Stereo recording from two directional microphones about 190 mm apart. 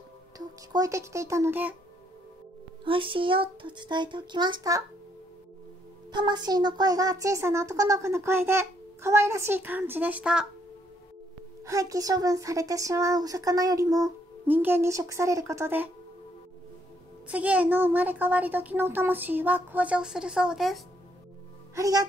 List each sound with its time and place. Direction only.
0.7 s speech: 15° right (ahead or behind)
2.8 s speech: 25° right (ahead or behind)
6.1 s speech: 20° right (ahead or behind); by 10.4 s 5° right (ahead or behind)
11.6 s speech: 15° right (ahead or behind)
17.3 s speech: 5° right (ahead or behind)
21.7 s speech: 20° right (ahead or behind)